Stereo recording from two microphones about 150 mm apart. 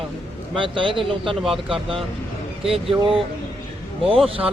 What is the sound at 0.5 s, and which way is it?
Speech, 35° right (ahead or behind).